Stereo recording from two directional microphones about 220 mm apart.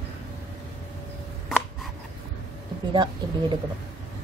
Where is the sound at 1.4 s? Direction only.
Centre (ahead or behind).